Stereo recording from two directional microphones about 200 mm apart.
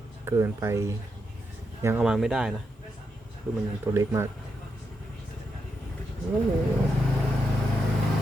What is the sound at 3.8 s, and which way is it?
Speech, 15° right (ahead or behind).